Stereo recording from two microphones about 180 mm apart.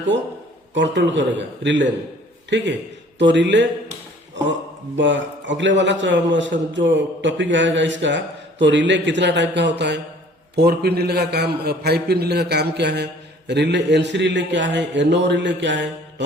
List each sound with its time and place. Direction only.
0.7 s a man's voice: 80° right